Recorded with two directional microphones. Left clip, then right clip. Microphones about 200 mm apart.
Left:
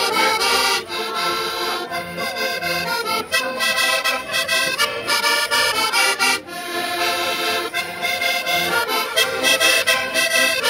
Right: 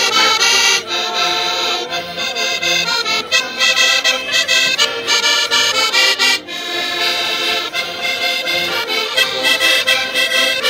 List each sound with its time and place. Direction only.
0.0 s accordion: 5° left (ahead or behind)
2.7 s music: 10° left (ahead or behind)
9.4 s music: 35° left (ahead or behind)